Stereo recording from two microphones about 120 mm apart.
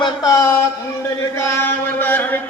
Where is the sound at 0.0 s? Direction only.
30° left (ahead or behind).